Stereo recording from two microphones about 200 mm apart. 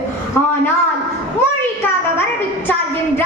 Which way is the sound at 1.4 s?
10° left (ahead or behind).